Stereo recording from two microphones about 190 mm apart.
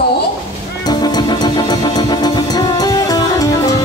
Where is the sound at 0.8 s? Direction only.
20° left (ahead or behind).